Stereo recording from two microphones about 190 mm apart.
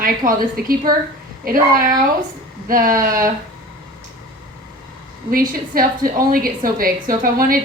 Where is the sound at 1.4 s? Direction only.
50° right (ahead or behind).